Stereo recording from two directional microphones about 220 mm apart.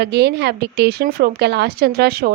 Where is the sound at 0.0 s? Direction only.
50° right (ahead or behind).